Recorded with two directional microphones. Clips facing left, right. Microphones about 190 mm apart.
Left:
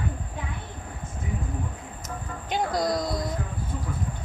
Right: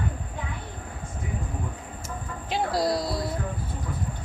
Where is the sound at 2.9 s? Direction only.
5° right (ahead or behind).